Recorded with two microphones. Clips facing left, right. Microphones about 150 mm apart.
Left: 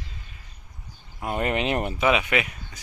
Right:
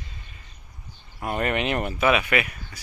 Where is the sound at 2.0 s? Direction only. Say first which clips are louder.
Right 1 dB; 15° left (ahead or behind).